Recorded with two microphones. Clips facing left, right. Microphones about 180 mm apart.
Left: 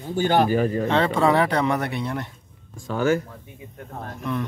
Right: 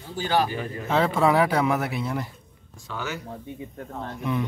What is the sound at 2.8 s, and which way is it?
Speech, 50° left (ahead or behind).